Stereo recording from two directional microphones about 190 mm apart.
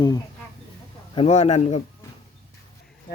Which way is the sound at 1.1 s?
35° left (ahead or behind).